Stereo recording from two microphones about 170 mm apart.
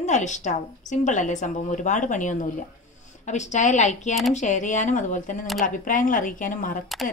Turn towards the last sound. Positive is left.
turn(degrees=50)  # may be behind; listen again after turning